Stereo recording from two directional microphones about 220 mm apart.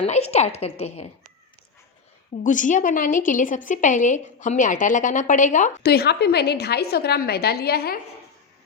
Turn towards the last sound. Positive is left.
turn(degrees=45)  # may be behind; listen again after turning